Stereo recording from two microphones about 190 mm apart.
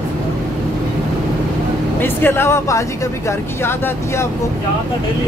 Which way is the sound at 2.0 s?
10° left (ahead or behind).